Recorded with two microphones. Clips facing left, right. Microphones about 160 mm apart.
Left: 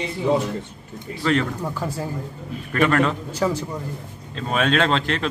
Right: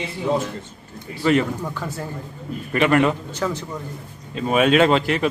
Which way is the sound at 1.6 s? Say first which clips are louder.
Left 2 dB; 10° left (ahead or behind).